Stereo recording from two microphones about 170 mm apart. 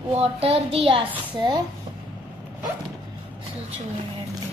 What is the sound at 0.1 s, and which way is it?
Child singing, 35° right (ahead or behind).